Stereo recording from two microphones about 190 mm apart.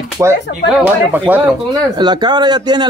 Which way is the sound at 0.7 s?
5° right (ahead or behind).